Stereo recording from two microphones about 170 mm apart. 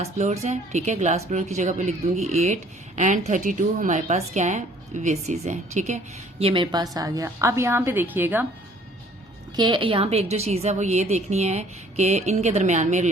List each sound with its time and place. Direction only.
0.0 s a woman's voice: 40° right (ahead or behind)
6.4 s a woman's voice: 30° right (ahead or behind); by 8.4 s 10° right (ahead or behind)
9.6 s a woman's voice: 25° right (ahead or behind); by 13.1 s 45° right (ahead or behind)